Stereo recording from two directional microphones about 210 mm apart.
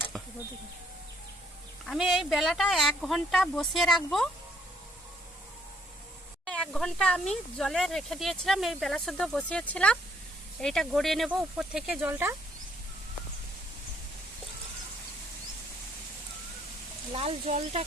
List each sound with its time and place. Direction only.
1.9 s speech: centre (ahead or behind)
6.5 s speech: 5° left (ahead or behind)
17.1 s speech: 30° right (ahead or behind)